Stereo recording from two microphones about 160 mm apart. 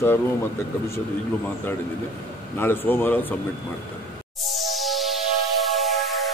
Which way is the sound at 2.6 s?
10° left (ahead or behind).